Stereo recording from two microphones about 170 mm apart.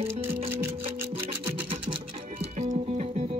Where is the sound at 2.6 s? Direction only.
45° right (ahead or behind).